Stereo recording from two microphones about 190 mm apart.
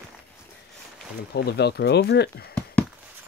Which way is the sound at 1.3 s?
60° left (ahead or behind).